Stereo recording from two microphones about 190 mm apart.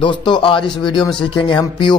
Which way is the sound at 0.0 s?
25° left (ahead or behind).